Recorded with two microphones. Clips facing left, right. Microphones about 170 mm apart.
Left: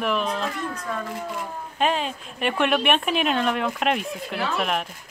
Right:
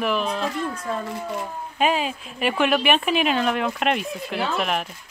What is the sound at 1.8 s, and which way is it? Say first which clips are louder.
Speech: right 2 dB; 5° right (ahead or behind).